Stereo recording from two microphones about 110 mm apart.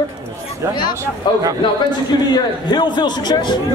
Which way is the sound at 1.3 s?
45° left (ahead or behind).